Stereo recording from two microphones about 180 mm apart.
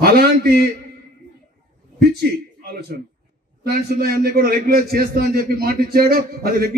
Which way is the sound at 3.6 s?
55° right (ahead or behind).